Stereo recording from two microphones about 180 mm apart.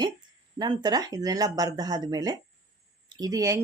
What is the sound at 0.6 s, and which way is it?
Speech, 20° right (ahead or behind).